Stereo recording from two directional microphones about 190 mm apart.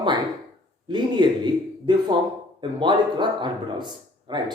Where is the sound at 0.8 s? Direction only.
25° right (ahead or behind).